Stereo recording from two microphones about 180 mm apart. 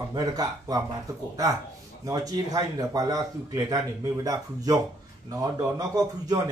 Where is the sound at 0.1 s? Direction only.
20° right (ahead or behind).